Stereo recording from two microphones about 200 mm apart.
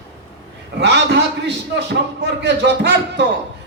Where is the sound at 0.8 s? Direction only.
60° right (ahead or behind).